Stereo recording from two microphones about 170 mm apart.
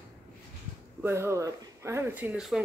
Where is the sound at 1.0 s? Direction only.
15° right (ahead or behind).